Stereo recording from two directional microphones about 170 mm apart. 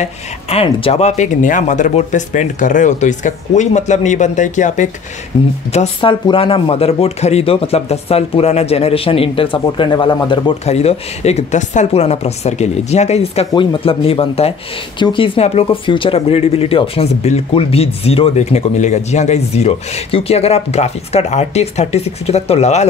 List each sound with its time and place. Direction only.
0.0 s speech: 35° left (ahead or behind)
5.3 s speech: 25° left (ahead or behind)
10.6 s speech: 40° left (ahead or behind)
13.5 s speech: 25° left (ahead or behind)